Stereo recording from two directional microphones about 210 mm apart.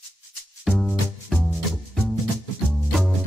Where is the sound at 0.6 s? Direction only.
Centre (ahead or behind).